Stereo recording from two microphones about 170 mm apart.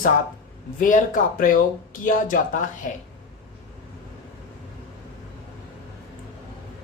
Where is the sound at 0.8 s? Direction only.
50° left (ahead or behind).